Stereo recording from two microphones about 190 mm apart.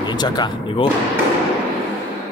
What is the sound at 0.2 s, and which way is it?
Speech, 25° left (ahead or behind).